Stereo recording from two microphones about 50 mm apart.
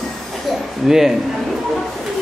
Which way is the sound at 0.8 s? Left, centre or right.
Centre.